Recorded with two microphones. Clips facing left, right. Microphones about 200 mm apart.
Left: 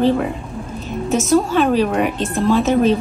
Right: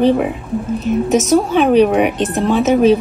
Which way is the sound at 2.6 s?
Centre (ahead or behind).